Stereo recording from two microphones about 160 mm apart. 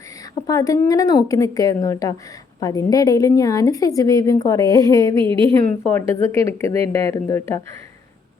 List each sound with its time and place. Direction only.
0.4 s a woman's voice: 20° left (ahead or behind)
5.2 s a woman's voice: 30° right (ahead or behind)
5.9 s speech: 15° left (ahead or behind)